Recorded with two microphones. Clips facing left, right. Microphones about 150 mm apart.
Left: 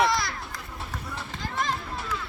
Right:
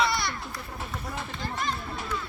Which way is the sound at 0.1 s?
90° left.